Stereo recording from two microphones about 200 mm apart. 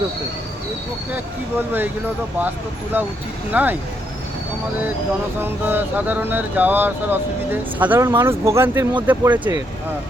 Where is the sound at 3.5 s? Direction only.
10° right (ahead or behind).